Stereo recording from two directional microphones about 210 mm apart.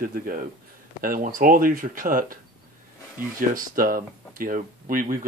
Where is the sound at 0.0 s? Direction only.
40° right (ahead or behind).